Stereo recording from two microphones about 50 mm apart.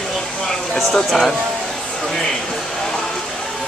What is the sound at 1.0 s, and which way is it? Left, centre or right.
Speech, centre.